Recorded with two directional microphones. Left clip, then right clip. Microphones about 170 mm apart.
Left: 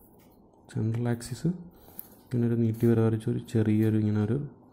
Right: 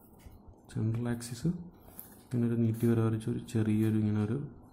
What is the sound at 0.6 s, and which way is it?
Speech, 20° left (ahead or behind).